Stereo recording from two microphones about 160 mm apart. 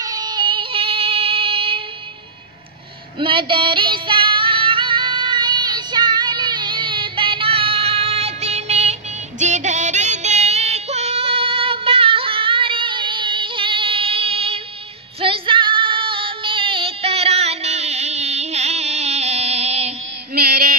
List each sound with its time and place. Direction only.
0.0 s female singing: 25° right (ahead or behind)
3.2 s music: 30° right (ahead or behind)
9.4 s child singing: 50° right (ahead or behind)
15.1 s female singing: 35° right (ahead or behind)